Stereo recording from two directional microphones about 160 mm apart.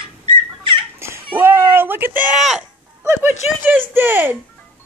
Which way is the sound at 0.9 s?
15° right (ahead or behind).